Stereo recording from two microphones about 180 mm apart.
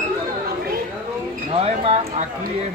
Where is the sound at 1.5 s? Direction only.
30° right (ahead or behind).